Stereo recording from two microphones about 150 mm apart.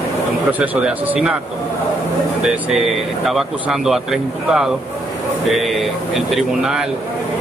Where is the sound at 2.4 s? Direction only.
Centre (ahead or behind).